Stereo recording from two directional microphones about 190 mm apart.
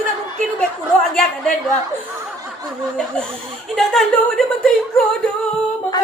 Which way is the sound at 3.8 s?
Centre (ahead or behind).